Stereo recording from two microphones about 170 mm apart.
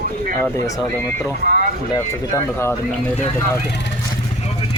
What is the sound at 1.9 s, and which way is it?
Speech, 15° left (ahead or behind).